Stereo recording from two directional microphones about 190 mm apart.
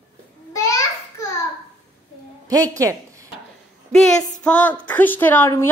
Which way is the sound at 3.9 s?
5° left (ahead or behind).